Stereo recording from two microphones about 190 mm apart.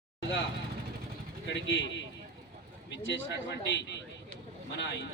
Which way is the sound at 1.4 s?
70° left (ahead or behind).